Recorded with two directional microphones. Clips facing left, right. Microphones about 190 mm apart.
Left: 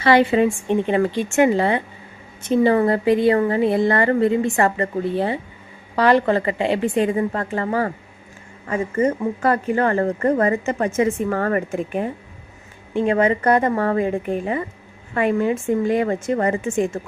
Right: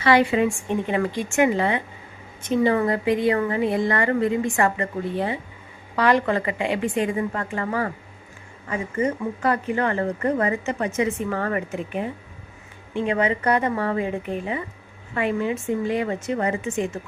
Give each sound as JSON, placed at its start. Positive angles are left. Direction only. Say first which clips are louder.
{"t": 0.0, "sound": "a woman's voice", "louder": "left 3 dB", "side_deg": 30}
{"t": 8.6, "sound": "speech", "louder": "left 4 dB", "side_deg": 45}